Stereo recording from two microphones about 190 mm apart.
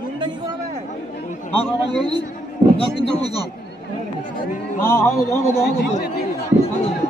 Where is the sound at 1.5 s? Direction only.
30° left (ahead or behind).